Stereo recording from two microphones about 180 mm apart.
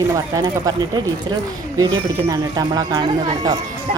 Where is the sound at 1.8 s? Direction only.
20° right (ahead or behind).